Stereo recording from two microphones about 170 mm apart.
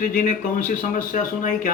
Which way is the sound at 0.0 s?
50° left (ahead or behind).